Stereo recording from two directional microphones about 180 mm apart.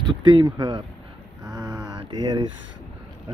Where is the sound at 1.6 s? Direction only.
20° right (ahead or behind).